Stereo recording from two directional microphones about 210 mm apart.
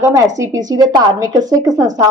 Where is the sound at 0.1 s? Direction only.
15° right (ahead or behind).